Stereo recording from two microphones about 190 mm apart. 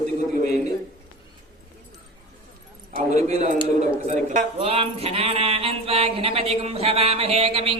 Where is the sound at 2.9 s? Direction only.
35° right (ahead or behind).